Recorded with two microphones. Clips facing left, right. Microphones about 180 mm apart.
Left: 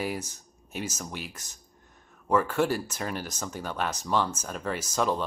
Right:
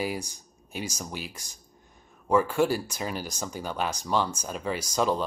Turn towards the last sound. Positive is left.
turn(degrees=0)  # may be behind; listen again after turning